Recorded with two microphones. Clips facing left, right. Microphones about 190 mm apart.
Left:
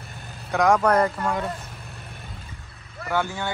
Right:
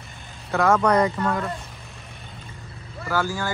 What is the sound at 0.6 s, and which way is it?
Speech, 10° left (ahead or behind).